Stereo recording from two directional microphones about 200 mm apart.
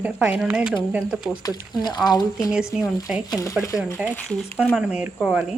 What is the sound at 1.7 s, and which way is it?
Speech, 20° left (ahead or behind).